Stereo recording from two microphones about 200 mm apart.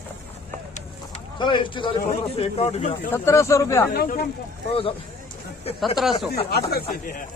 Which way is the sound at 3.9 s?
50° left (ahead or behind).